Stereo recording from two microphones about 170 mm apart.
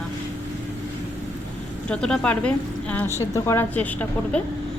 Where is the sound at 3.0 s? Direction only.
15° right (ahead or behind).